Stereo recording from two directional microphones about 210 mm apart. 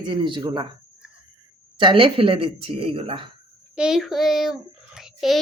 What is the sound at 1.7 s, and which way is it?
Speech, 25° right (ahead or behind).